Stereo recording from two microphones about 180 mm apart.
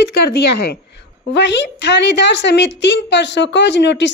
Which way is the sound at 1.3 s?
75° left (ahead or behind).